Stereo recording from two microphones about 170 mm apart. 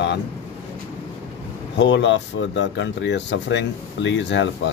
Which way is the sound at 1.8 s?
90° left.